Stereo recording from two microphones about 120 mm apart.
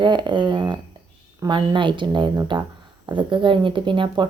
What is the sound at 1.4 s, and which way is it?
Speech, 40° right (ahead or behind).